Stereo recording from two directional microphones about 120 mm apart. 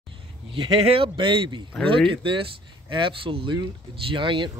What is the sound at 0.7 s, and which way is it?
Speech, 50° right (ahead or behind).